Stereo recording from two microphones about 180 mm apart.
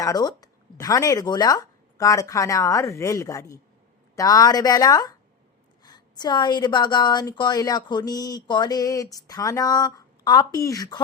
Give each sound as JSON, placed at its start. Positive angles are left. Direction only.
{"t": 0.0, "sound": "a woman's voice", "side_deg": 20}